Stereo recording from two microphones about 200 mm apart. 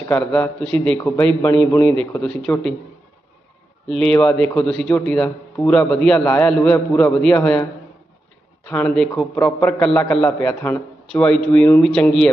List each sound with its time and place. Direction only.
0.2 s a man's voice: 5° left (ahead or behind)
3.8 s a man's voice: 5° left (ahead or behind)
8.7 s a man's voice: 5° left (ahead or behind)